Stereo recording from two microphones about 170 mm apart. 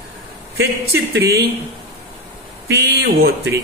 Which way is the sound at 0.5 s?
80° right.